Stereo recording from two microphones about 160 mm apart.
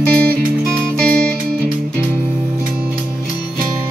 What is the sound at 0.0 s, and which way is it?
Music, 70° right (ahead or behind).